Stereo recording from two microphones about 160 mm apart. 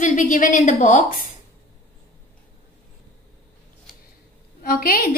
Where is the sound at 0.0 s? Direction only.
50° left (ahead or behind).